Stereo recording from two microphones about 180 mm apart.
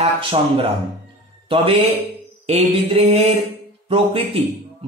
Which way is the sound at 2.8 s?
35° right (ahead or behind).